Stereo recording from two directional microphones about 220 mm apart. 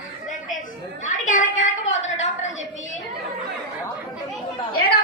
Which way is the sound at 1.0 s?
35° left (ahead or behind).